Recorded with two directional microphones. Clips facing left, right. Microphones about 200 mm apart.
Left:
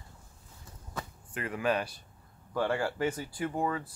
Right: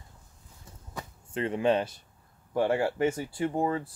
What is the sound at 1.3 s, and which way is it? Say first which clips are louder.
Speech: right 5 dB; 25° right (ahead or behind).